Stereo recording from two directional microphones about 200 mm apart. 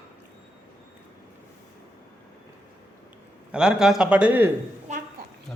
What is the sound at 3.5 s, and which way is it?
A man's voice, 5° right (ahead or behind).